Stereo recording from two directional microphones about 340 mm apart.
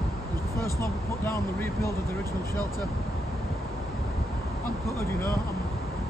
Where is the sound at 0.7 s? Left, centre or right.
Centre.